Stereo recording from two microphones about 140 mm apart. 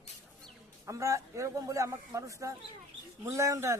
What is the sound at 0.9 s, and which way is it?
A man's voice, 25° right (ahead or behind).